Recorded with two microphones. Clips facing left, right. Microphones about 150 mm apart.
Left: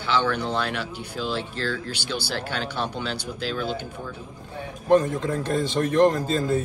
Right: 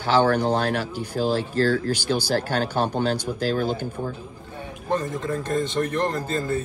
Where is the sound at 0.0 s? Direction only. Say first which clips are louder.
Right 5 dB; 45° right (ahead or behind).